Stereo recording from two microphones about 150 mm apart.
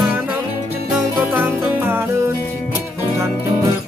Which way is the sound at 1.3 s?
15° right (ahead or behind).